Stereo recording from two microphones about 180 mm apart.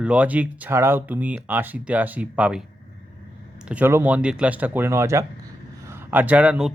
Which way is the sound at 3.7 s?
10° right (ahead or behind).